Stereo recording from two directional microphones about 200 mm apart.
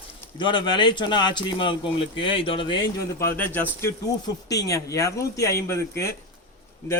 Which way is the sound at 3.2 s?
10° left (ahead or behind).